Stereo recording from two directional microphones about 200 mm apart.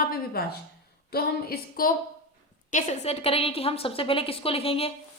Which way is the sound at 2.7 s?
35° left (ahead or behind).